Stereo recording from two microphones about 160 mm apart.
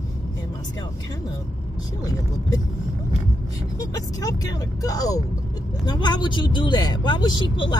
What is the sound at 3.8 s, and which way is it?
Speech, 20° left (ahead or behind).